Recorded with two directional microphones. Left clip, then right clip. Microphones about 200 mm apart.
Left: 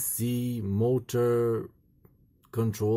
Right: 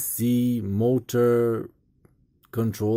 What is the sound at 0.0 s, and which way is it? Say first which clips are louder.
Speech: right 8 dB; 20° right (ahead or behind).